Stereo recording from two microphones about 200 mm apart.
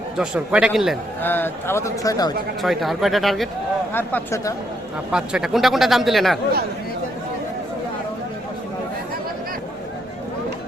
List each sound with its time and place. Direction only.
0.2 s speech: 5° right (ahead or behind)
1.2 s speech: 10° left (ahead or behind)
2.6 s speech: centre (ahead or behind)
3.9 s speech: 10° left (ahead or behind)
5.1 s speech: 5° right (ahead or behind)